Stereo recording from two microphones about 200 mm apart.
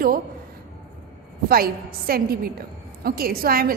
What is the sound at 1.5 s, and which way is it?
A woman's voice, 50° right (ahead or behind).